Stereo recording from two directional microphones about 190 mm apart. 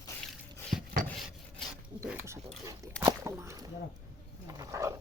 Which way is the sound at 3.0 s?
15° right (ahead or behind).